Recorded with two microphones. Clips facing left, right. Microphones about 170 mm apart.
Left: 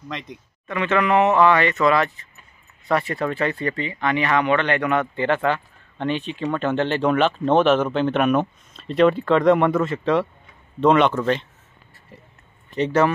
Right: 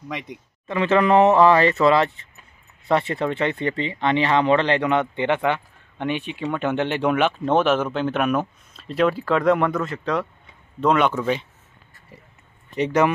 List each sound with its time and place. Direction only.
0.1 s speech: 10° right (ahead or behind)
0.7 s speech: 30° right (ahead or behind); by 11.4 s 5° right (ahead or behind)
12.7 s speech: 15° right (ahead or behind)